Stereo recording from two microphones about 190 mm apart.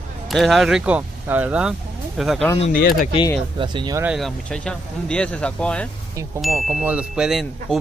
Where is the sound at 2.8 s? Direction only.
50° left (ahead or behind).